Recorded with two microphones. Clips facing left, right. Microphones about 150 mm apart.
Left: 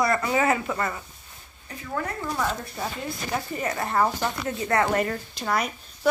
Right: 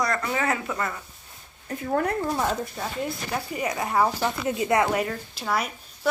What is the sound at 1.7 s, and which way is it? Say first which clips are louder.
Speech: right 6 dB; 50° right (ahead or behind).